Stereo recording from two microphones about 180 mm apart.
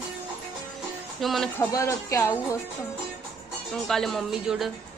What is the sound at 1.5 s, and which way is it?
Speech, 15° left (ahead or behind).